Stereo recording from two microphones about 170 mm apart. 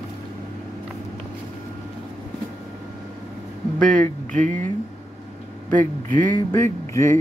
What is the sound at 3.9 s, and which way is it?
Speech, 50° right (ahead or behind).